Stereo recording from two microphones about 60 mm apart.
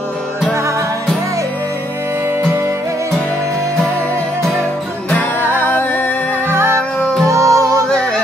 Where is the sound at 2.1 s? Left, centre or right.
Right.